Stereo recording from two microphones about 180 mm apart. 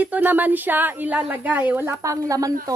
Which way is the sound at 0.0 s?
10° right (ahead or behind).